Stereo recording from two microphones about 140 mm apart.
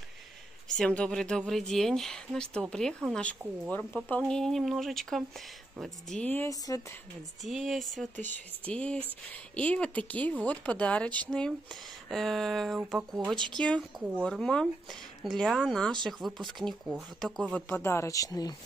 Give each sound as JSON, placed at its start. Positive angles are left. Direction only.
{"t": 0.7, "sound": "speech", "side_deg": 5}
{"t": 6.5, "sound": "speech", "side_deg": 25}
{"t": 7.4, "sound": "speech", "side_deg": 0}